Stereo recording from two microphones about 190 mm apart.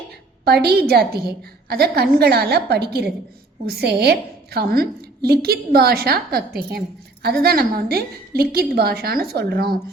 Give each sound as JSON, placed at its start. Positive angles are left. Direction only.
{"t": 0.4, "sound": "a woman's voice", "side_deg": -55}